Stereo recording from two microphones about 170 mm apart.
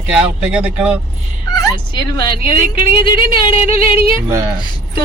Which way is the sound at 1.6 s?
25° left (ahead or behind).